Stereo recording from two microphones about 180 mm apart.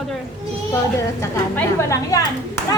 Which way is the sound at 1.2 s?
15° left (ahead or behind).